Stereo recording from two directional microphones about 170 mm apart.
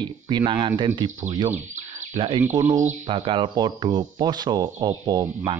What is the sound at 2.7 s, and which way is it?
Speech, 45° right (ahead or behind).